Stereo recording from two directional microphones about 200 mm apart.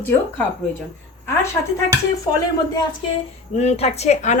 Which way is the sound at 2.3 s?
25° left (ahead or behind).